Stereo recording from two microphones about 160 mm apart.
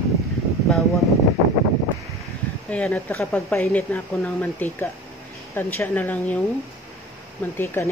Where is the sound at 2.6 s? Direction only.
5° left (ahead or behind).